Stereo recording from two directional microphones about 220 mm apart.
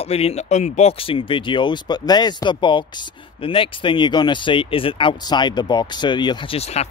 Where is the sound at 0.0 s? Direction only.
30° left (ahead or behind).